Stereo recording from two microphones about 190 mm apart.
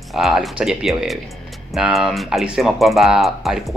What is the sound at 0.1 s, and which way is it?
Speech, centre (ahead or behind).